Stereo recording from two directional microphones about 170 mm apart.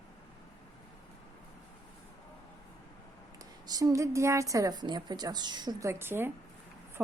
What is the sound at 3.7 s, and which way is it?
A woman's voice, 20° right (ahead or behind).